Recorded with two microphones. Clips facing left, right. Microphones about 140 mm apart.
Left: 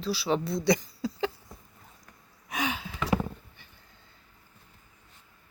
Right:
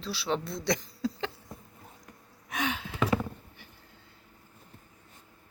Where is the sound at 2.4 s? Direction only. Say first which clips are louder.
Left 1 dB; centre (ahead or behind).